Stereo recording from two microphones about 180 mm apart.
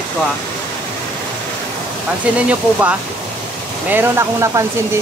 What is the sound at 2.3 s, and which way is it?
Speech, 5° right (ahead or behind).